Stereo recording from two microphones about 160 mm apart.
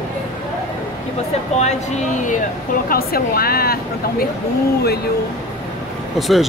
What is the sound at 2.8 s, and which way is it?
Speech, 70° left (ahead or behind).